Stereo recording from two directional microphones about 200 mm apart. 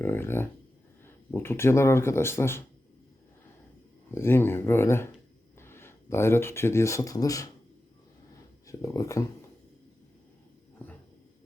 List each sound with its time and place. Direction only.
0.0 s speech: 10° left (ahead or behind)
4.1 s speech: 10° left (ahead or behind)
8.6 s speech: 15° left (ahead or behind)